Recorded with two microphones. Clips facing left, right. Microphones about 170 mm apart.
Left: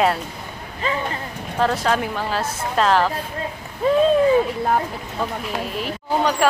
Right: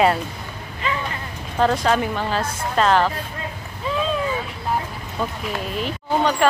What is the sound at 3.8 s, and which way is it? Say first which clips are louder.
Speech: left 8 dB; 50° left (ahead or behind).